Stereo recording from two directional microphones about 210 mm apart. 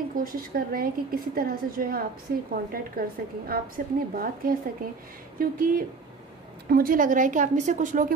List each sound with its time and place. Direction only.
0.1 s a woman's voice: 45° right (ahead or behind)